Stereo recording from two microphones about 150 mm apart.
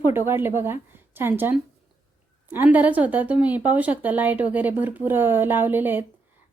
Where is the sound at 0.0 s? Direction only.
15° right (ahead or behind).